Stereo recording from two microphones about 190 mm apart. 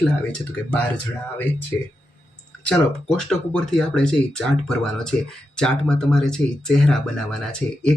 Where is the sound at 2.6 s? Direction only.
5° left (ahead or behind).